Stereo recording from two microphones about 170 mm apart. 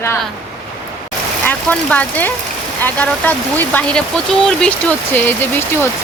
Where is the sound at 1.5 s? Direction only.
10° left (ahead or behind).